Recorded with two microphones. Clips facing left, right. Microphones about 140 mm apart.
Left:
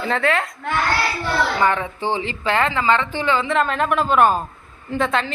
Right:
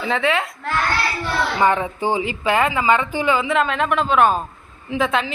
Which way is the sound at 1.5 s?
20° right (ahead or behind).